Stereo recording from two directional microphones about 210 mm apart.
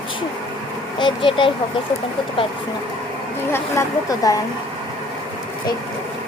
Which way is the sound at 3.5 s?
15° left (ahead or behind).